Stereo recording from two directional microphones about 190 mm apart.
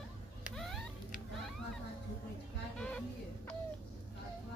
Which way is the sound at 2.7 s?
5° left (ahead or behind).